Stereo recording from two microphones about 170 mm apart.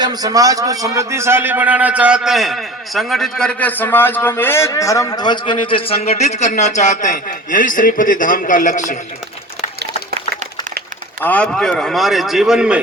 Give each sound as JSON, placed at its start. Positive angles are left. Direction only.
{"t": 0.0, "sound": "a man's voice", "side_deg": -25}
{"t": 10.2, "sound": "a sound", "side_deg": -45}
{"t": 11.2, "sound": "speech", "side_deg": 10}